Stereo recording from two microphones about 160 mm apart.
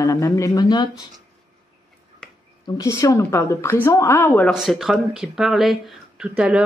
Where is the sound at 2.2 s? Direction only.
5° left (ahead or behind).